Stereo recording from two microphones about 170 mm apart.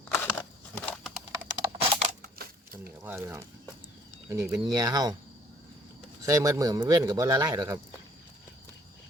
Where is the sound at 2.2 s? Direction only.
60° right (ahead or behind).